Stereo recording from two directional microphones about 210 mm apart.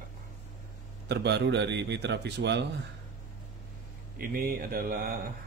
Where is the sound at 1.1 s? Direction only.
55° right (ahead or behind).